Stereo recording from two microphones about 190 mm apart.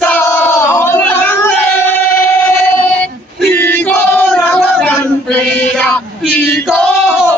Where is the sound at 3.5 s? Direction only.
10° left (ahead or behind).